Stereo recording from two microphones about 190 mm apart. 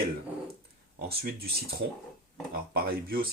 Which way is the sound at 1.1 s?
55° right (ahead or behind).